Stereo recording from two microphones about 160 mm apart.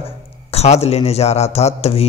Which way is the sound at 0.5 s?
40° left (ahead or behind).